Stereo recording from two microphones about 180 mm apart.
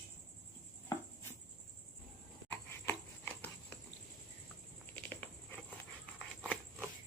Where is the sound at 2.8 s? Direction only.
10° left (ahead or behind).